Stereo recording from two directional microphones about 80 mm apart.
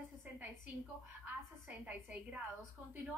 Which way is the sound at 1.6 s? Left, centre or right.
Centre.